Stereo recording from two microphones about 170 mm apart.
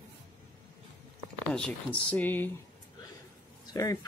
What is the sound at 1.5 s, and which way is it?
Speech, 5° left (ahead or behind).